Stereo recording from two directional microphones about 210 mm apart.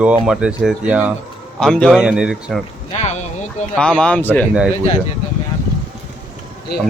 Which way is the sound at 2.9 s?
35° left (ahead or behind).